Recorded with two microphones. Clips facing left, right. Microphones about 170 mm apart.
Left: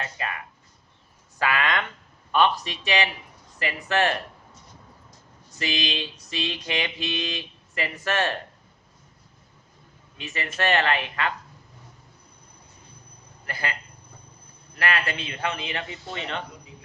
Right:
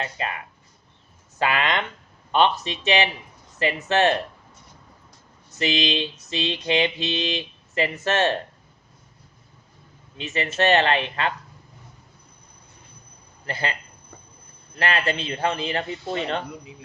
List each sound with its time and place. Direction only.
0.0 s a sound: 30° right (ahead or behind)
1.4 s speech: 25° right (ahead or behind)
2.3 s mantra: 25° right (ahead or behind)
5.5 s mantra: 25° right (ahead or behind)
10.2 s mantra: 25° right (ahead or behind)
13.5 s mantra: 25° right (ahead or behind)
14.8 s a man's voice: 25° right (ahead or behind)